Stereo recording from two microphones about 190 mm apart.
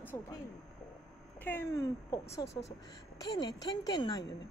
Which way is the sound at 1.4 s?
15° left (ahead or behind).